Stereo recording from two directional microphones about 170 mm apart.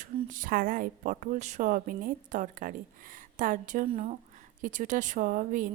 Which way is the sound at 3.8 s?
35° right (ahead or behind).